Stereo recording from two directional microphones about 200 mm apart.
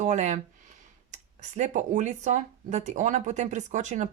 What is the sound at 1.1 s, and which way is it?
Speech, 35° right (ahead or behind).